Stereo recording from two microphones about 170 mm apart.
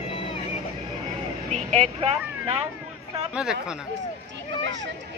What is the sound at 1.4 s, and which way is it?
Vehicle, 40° right (ahead or behind).